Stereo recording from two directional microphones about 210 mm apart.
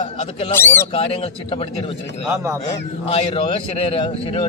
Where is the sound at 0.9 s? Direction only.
25° left (ahead or behind).